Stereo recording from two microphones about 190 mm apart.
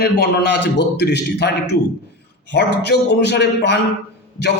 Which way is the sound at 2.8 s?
60° left (ahead or behind).